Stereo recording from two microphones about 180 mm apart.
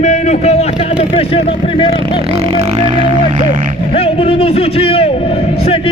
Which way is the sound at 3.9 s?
30° left (ahead or behind).